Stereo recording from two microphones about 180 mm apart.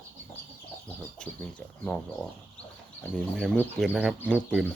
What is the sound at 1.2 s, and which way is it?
Speech, 5° left (ahead or behind).